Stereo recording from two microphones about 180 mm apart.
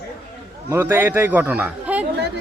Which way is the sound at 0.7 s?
10° right (ahead or behind).